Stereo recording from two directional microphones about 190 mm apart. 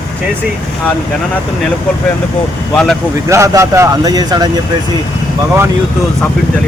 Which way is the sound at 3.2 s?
15° right (ahead or behind).